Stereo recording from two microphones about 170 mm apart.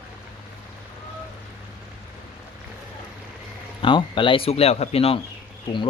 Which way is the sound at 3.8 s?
30° left (ahead or behind).